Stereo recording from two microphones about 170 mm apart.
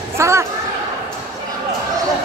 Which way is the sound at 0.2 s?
15° right (ahead or behind).